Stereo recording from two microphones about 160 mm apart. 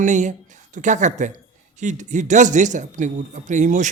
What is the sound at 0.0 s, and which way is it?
A woman's voice, 50° right (ahead or behind).